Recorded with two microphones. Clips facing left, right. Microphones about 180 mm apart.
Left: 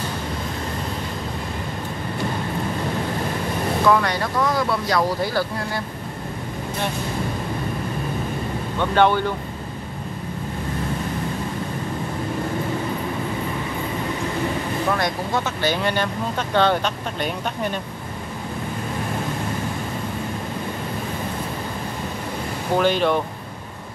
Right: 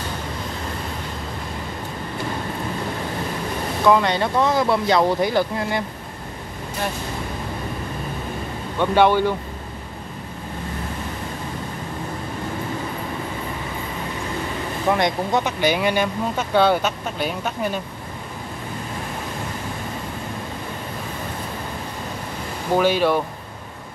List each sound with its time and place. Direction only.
3.9 s speech: 20° right (ahead or behind)
8.7 s speech: 10° right (ahead or behind)
15.0 s speech: 20° right (ahead or behind)
22.8 s speech: 10° right (ahead or behind)